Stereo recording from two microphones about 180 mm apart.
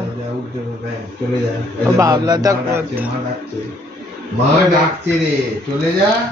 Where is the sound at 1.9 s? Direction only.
20° right (ahead or behind).